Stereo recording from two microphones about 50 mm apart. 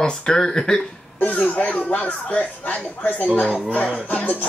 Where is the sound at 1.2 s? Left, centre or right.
Left.